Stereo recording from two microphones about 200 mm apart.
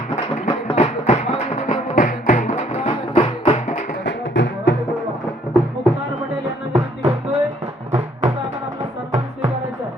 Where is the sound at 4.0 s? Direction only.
60° left (ahead or behind).